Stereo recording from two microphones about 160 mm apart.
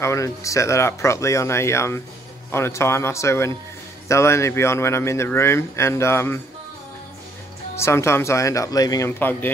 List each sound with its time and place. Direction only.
0.0 s speech: 20° left (ahead or behind)
7.7 s speech: 15° left (ahead or behind)